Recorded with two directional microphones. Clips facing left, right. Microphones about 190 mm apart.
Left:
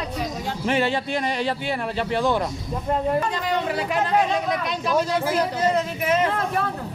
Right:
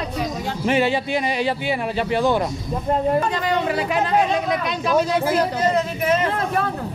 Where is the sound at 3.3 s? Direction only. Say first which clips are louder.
Right 3 dB; 90° right.